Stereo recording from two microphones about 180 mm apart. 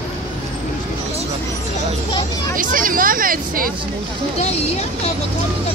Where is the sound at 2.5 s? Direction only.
50° right (ahead or behind).